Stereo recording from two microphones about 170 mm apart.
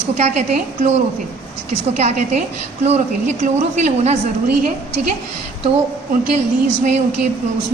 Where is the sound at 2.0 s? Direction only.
40° right (ahead or behind).